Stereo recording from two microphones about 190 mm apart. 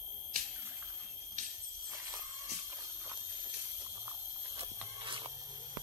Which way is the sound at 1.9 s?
15° right (ahead or behind).